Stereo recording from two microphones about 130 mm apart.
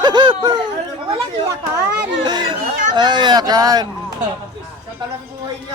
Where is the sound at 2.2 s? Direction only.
35° right (ahead or behind).